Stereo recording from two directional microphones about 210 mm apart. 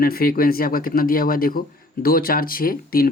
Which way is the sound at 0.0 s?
45° left (ahead or behind).